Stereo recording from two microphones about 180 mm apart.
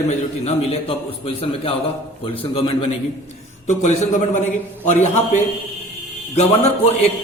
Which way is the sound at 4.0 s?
40° left (ahead or behind).